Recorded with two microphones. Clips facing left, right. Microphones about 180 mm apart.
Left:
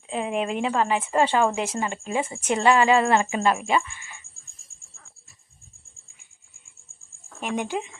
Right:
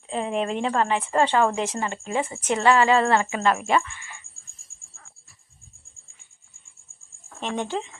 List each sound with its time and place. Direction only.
0.1 s a woman's voice: 10° left (ahead or behind)
7.4 s a woman's voice: 10° left (ahead or behind)